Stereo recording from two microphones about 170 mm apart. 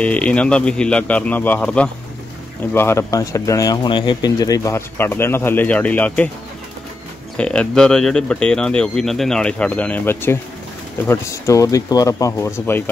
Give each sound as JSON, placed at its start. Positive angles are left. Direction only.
{"t": 0.0, "sound": "speech", "side_deg": 5}
{"t": 7.3, "sound": "speech", "side_deg": 5}